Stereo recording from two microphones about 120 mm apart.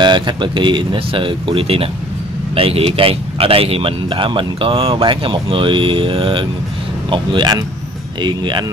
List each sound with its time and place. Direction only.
0.0 s speech: 40° right (ahead or behind)